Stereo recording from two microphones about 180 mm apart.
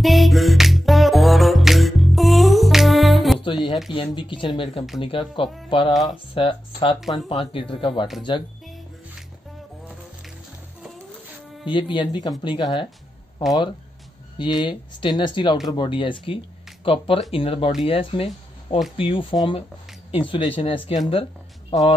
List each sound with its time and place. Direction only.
0.0 s music: centre (ahead or behind)
3.9 s speech: 25° left (ahead or behind)
7.0 s speech: centre (ahead or behind)
7.2 s speech: 30° left (ahead or behind)
11.6 s speech: 25° left (ahead or behind)
14.4 s speech: 25° left (ahead or behind)
21.1 s music: 30° left (ahead or behind)